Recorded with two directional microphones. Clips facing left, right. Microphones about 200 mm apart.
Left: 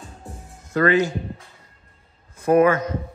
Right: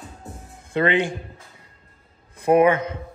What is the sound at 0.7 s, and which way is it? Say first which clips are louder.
Speech: left 2 dB; 25° right (ahead or behind).